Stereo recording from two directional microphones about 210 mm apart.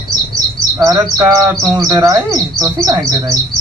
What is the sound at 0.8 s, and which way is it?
A man's voice, 15° right (ahead or behind).